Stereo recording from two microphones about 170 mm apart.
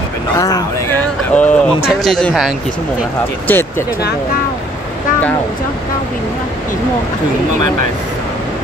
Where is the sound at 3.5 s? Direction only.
10° left (ahead or behind).